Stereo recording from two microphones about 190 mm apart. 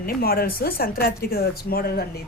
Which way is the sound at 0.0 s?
50° left (ahead or behind).